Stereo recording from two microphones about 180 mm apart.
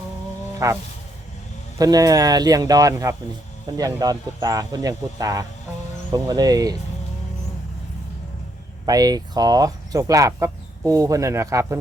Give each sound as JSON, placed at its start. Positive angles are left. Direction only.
{"t": 0.6, "sound": "a sound", "side_deg": -15}
{"t": 1.8, "sound": "speech", "side_deg": -20}
{"t": 8.9, "sound": "speech", "side_deg": -20}